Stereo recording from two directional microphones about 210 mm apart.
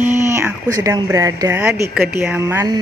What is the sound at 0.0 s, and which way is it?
Speech, 10° right (ahead or behind).